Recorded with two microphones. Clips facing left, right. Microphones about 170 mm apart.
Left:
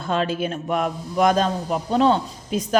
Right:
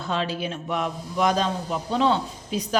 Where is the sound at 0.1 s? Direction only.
50° left (ahead or behind).